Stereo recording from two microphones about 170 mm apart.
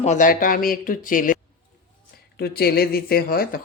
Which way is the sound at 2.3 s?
65° left (ahead or behind).